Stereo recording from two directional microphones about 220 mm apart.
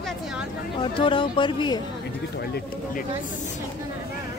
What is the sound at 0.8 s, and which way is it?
A woman's voice, 20° left (ahead or behind).